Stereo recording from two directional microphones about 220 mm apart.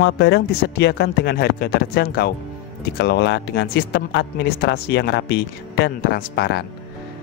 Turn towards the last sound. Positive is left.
turn(degrees=50)  # may be behind; listen again after turning